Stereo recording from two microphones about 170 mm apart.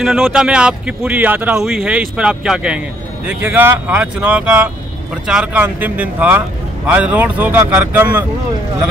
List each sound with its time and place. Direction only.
0.0 s speech: 5° right (ahead or behind)